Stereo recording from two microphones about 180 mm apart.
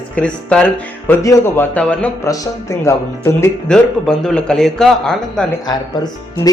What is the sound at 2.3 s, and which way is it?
Speech, 20° left (ahead or behind).